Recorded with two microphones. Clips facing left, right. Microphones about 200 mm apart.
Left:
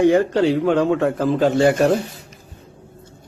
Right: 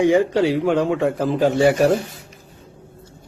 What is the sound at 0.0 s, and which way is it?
A man's voice, 15° right (ahead or behind).